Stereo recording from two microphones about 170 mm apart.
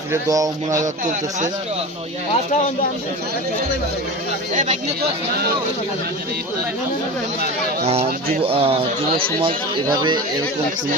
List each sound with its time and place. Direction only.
0.1 s speech: 20° right (ahead or behind)
2.3 s speech: 45° left (ahead or behind)
8.4 s speech: 35° right (ahead or behind)
9.9 s speech: 25° right (ahead or behind)